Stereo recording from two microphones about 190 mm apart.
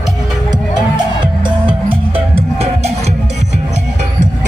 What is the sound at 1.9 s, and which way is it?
Music, 30° right (ahead or behind).